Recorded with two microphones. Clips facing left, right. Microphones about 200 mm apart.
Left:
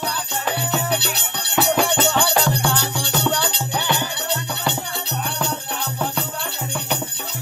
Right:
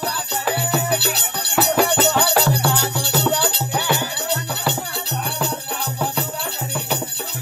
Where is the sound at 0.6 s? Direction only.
5° right (ahead or behind).